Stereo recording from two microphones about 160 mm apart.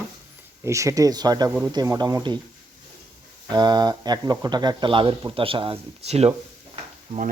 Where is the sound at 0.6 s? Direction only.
20° right (ahead or behind).